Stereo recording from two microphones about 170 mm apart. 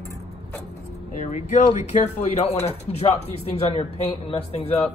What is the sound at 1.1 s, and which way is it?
Speech, 40° left (ahead or behind).